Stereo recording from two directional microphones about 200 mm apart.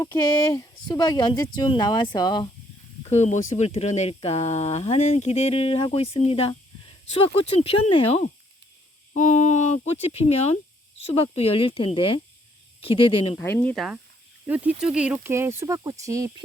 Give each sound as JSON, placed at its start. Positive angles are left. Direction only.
{"t": 0.5, "sound": "speech", "side_deg": 20}
{"t": 3.0, "sound": "speech", "side_deg": 35}
{"t": 13.4, "sound": "speech", "side_deg": 10}